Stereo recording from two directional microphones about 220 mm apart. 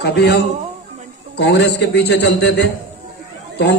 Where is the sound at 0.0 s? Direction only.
50° left (ahead or behind).